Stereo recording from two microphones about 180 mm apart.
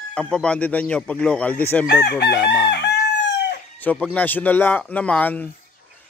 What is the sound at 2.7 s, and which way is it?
Crowing, 70° left (ahead or behind).